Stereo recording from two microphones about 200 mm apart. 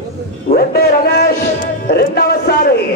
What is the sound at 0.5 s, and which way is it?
A man's voice, 50° left (ahead or behind).